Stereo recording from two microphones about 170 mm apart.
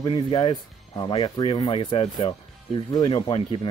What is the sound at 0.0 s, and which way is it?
Speech, 25° left (ahead or behind).